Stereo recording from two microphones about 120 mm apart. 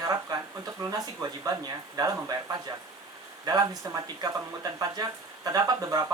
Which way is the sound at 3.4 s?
35° right (ahead or behind).